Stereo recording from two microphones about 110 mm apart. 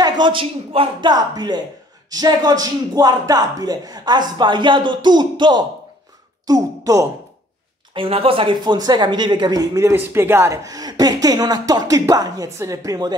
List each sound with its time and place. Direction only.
0.0 s speech: 45° right (ahead or behind)
1.1 s a man's voice: 40° right (ahead or behind)
7.9 s speech: 55° right (ahead or behind)
9.8 s a man's voice: 25° right (ahead or behind)